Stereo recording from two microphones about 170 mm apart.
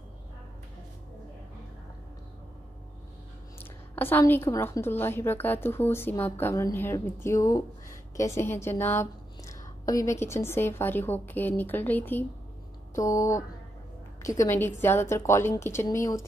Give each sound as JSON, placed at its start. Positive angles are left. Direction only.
{"t": 3.9, "sound": "a woman's voice", "side_deg": 10}